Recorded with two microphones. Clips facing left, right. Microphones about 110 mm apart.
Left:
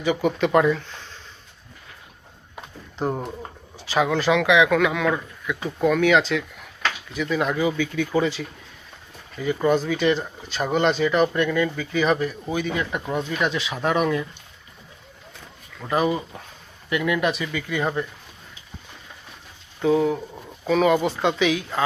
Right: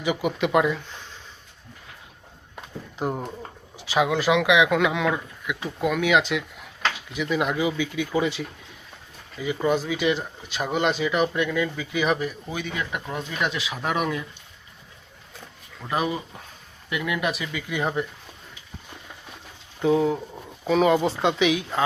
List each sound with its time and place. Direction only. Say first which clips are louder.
0.0 s speech: left 3 dB; 10° right (ahead or behind)
2.6 s a sound: left 1 dB; centre (ahead or behind)
3.8 s speech: left 1 dB; 10° right (ahead or behind)
9.6 s speech: left 3 dB; 10° right (ahead or behind)
15.8 s speech: left 4 dB; centre (ahead or behind)
19.8 s speech: left 1 dB; 20° right (ahead or behind)